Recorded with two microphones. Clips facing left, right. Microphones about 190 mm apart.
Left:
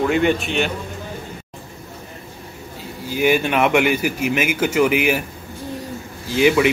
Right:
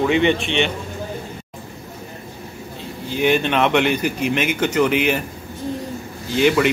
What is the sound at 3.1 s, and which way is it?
Speech, 5° left (ahead or behind).